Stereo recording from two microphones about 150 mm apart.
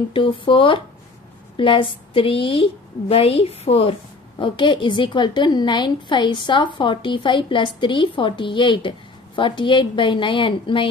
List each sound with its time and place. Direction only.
0.1 s a woman's voice: 35° left (ahead or behind)